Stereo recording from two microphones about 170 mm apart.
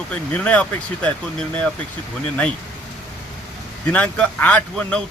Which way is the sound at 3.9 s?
5° left (ahead or behind).